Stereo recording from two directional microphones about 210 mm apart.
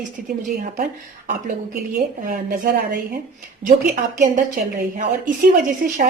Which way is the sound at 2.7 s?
45° right (ahead or behind).